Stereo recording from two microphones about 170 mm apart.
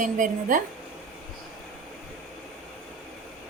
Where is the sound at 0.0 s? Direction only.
50° right (ahead or behind).